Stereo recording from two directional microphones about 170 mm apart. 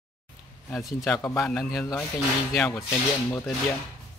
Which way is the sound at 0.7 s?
5° left (ahead or behind).